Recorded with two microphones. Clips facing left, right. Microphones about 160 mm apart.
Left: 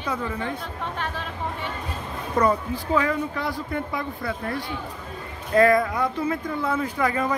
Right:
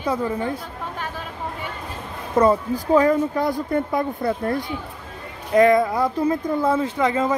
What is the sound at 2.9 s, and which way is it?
Speech, 40° right (ahead or behind).